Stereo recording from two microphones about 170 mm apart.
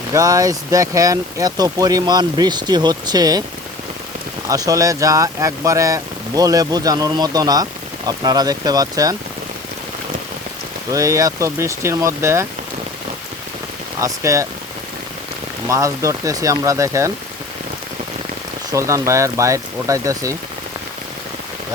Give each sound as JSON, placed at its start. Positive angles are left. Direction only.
{"t": 0.1, "sound": "speech", "side_deg": -20}
{"t": 4.4, "sound": "speech", "side_deg": -20}
{"t": 10.9, "sound": "speech", "side_deg": -20}
{"t": 14.0, "sound": "speech", "side_deg": -20}
{"t": 15.6, "sound": "speech", "side_deg": -15}
{"t": 18.7, "sound": "speech", "side_deg": -20}